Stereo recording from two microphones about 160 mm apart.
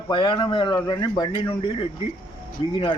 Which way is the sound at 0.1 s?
30° left (ahead or behind).